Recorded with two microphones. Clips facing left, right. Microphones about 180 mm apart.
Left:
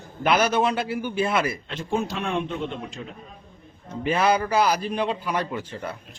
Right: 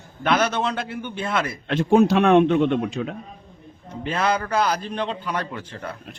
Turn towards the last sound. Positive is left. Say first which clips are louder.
# left 2 dB
turn(degrees=5)  # may be behind; listen again after turning